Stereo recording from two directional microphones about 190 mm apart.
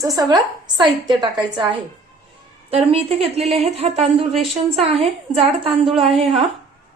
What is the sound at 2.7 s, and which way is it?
A woman's voice, 30° right (ahead or behind).